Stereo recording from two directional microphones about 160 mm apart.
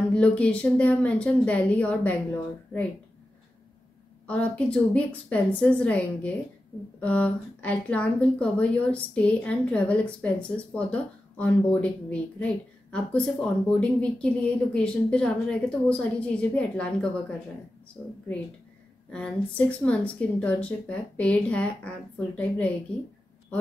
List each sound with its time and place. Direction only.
0.1 s a woman's voice: 5° left (ahead or behind)
4.3 s a woman's voice: 10° left (ahead or behind)
19.1 s a woman's voice: 10° left (ahead or behind)